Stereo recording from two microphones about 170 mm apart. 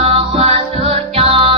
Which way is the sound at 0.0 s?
35° right (ahead or behind).